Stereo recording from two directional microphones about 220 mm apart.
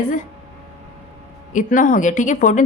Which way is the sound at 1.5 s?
35° left (ahead or behind).